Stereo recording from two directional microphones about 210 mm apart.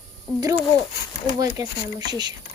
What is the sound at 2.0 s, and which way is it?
Speech, 20° right (ahead or behind).